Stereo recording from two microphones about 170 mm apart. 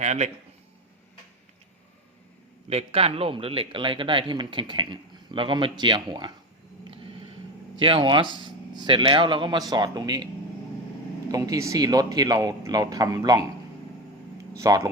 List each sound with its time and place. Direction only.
0.0 s speech: 40° right (ahead or behind)
2.6 s speech: 35° right (ahead or behind)
6.8 s a sound: 30° right (ahead or behind)
7.8 s speech: 30° right (ahead or behind)
11.3 s speech: 20° right (ahead or behind)
14.6 s speech: 20° right (ahead or behind)